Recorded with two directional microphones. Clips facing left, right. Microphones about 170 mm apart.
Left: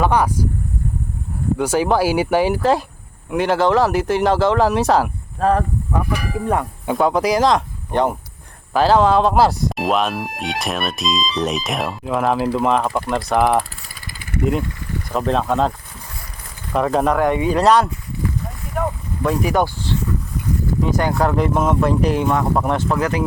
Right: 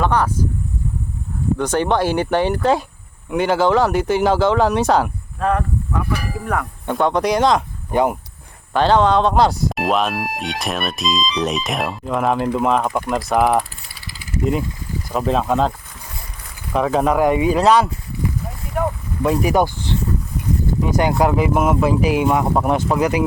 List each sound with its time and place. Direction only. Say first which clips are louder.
0.0 s speech: left 1 dB; 10° left (ahead or behind)
1.5 s speech: left 1 dB; 10° left (ahead or behind)
5.4 s speech: left 3 dB; 30° left (ahead or behind)
5.9 s a sound: left 3 dB; 15° left (ahead or behind)
6.8 s speech: even; 5° left (ahead or behind)
8.7 s speech: left 1 dB; 5° left (ahead or behind)
13.8 s vehicle: left 1 dB; 50° left (ahead or behind)
15.1 s speech: right 1 dB; 5° right (ahead or behind)
16.7 s speech: even; centre (ahead or behind)
19.2 s speech: right 2 dB; 15° right (ahead or behind)